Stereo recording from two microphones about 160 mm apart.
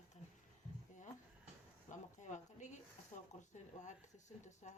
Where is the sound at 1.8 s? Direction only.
50° left (ahead or behind).